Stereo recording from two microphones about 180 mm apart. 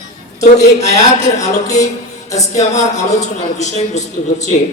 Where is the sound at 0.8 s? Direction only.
40° left (ahead or behind).